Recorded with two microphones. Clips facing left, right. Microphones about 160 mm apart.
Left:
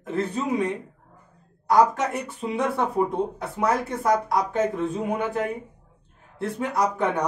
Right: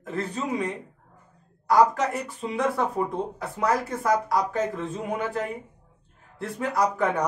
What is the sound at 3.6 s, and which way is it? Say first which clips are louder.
Speech: left 1 dB; 25° left (ahead or behind).